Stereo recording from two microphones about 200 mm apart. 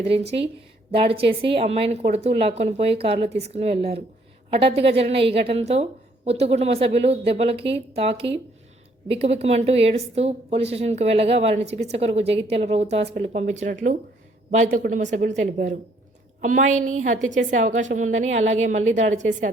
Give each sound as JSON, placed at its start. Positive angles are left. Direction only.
{"t": 0.0, "sound": "a woman's voice", "side_deg": -30}